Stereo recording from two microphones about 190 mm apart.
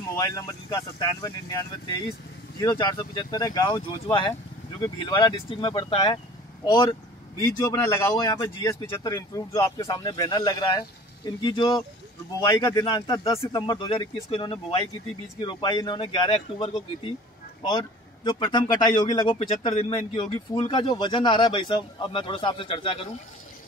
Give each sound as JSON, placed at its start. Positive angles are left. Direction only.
{"t": 0.1, "sound": "speech", "side_deg": 15}